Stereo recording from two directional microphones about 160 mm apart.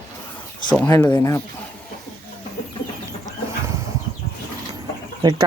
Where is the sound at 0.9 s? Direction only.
20° left (ahead or behind).